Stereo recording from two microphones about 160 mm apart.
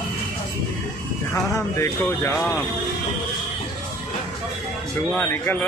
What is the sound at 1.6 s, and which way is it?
Speech, 20° left (ahead or behind).